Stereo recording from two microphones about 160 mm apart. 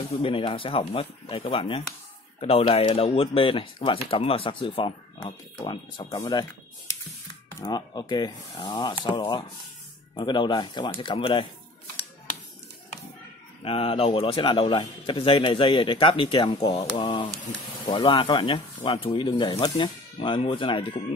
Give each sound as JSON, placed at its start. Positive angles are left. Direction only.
{"t": 0.2, "sound": "a man's voice", "side_deg": 35}
{"t": 7.6, "sound": "speech", "side_deg": 25}
{"t": 13.6, "sound": "a man's voice", "side_deg": 35}